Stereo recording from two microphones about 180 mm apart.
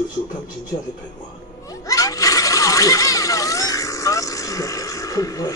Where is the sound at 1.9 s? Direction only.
20° left (ahead or behind).